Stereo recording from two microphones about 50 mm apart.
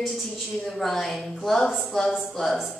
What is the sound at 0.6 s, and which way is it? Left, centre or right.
A woman's voice, centre.